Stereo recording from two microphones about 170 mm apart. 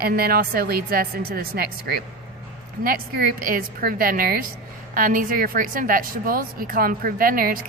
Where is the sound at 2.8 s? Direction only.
60° right (ahead or behind).